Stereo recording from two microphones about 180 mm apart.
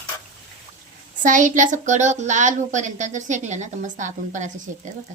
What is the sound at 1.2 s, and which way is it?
A woman's voice, 45° right (ahead or behind).